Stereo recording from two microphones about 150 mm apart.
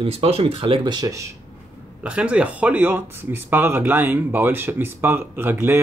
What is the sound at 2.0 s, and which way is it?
Speech, 10° right (ahead or behind).